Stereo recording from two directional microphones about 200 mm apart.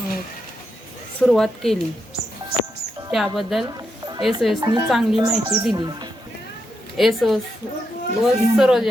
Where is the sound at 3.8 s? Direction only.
20° right (ahead or behind).